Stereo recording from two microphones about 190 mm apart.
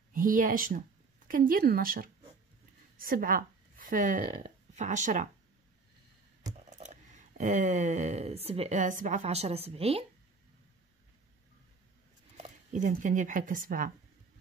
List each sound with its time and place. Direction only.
0.1 s speech: 45° right (ahead or behind)
6.5 s a sound: 40° right (ahead or behind)
8.5 s a woman's voice: 35° right (ahead or behind)
12.4 s speech: 40° right (ahead or behind)